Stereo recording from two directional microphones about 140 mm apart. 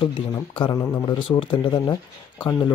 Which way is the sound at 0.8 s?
25° left (ahead or behind).